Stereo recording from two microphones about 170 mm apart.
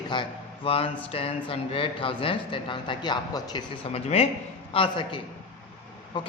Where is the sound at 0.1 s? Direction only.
30° left (ahead or behind).